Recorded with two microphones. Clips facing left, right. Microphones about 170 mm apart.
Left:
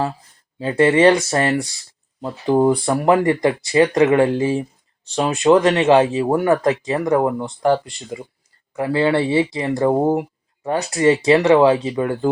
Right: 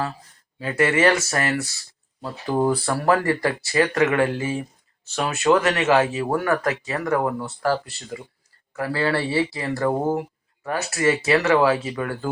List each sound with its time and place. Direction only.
0.6 s speech: 30° left (ahead or behind)
5.4 s speech: 15° left (ahead or behind)
5.9 s speech: 30° left (ahead or behind)